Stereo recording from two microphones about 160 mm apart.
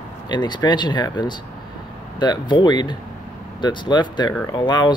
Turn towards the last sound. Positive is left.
turn(degrees=25)  # may be behind; listen again after turning